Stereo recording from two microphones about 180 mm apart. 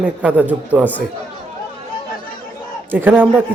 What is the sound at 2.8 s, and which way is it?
Speech, 10° right (ahead or behind).